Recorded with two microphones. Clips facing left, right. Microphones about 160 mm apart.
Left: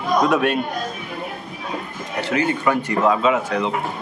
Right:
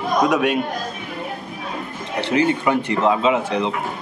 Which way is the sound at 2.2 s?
25° right (ahead or behind).